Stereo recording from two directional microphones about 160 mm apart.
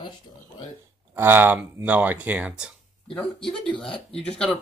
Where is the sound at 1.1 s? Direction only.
15° right (ahead or behind).